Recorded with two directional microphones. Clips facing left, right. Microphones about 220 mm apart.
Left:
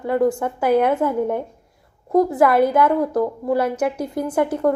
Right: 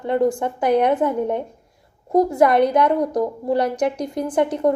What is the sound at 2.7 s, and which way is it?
Speech, 20° right (ahead or behind).